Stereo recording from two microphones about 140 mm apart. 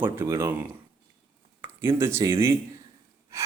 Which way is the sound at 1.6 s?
15° right (ahead or behind).